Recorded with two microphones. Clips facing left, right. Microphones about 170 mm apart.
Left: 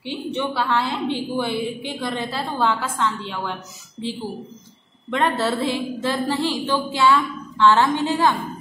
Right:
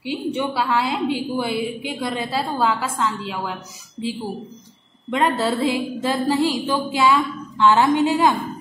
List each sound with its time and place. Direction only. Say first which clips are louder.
0.0 s a woman's voice: right 2 dB; 10° right (ahead or behind)
5.1 s a woman's voice: right 1 dB; 10° right (ahead or behind)